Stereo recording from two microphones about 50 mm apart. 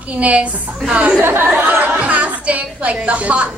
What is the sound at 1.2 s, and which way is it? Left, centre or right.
Speech, right.